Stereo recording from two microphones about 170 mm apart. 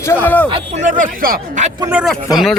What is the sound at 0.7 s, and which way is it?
Speech, 50° right (ahead or behind).